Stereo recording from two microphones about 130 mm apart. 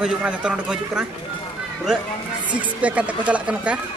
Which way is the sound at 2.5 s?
10° right (ahead or behind).